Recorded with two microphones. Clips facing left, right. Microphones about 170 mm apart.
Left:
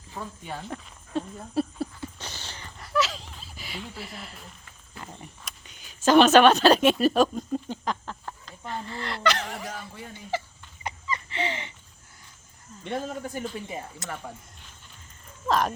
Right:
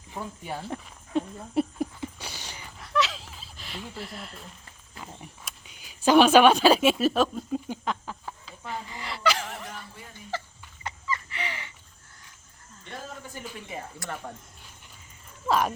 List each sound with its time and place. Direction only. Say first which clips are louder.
0.1 s speech: right 1 dB; 10° right (ahead or behind)
0.7 s a sound: right 3 dB; 20° right (ahead or behind); by 4.4 s centre (ahead or behind)
5.2 s a woman's voice: even; 5° right (ahead or behind)
10.3 s a sound: left 4 dB; 10° left (ahead or behind); by 11.7 s 25° left (ahead or behind)
13.7 s speech: left 1 dB; 20° left (ahead or behind)
15.4 s speech: even; 10° right (ahead or behind)